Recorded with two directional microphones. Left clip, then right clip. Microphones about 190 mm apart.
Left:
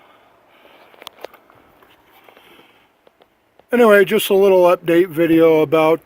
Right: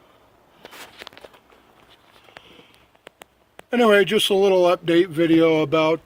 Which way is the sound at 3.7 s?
50° left (ahead or behind).